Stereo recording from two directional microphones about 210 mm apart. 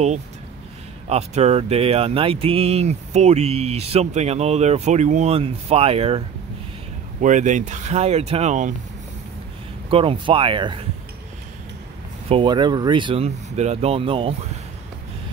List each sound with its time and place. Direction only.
1.0 s speech: 30° right (ahead or behind)
9.8 s speech: 25° right (ahead or behind)
12.3 s speech: 25° right (ahead or behind)